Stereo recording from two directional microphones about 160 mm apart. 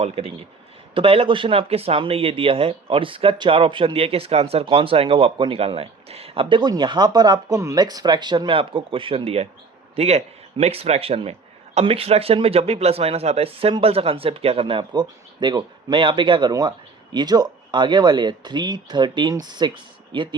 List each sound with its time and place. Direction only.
0.9 s speech: 35° right (ahead or behind)